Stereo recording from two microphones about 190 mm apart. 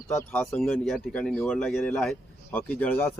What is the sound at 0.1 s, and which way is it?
Speech, 15° left (ahead or behind).